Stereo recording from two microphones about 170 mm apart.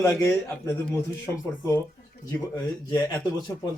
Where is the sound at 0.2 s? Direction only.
5° left (ahead or behind).